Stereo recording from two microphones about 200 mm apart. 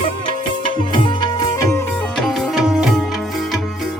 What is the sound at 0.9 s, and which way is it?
Music, 25° left (ahead or behind).